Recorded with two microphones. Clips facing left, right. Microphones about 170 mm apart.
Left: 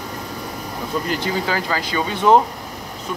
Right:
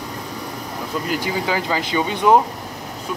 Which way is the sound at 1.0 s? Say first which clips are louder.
Right 2 dB; 15° right (ahead or behind).